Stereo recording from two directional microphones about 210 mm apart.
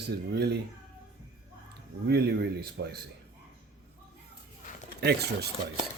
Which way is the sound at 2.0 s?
50° right (ahead or behind).